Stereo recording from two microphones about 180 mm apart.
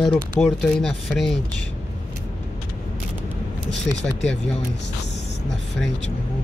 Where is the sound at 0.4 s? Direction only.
5° left (ahead or behind).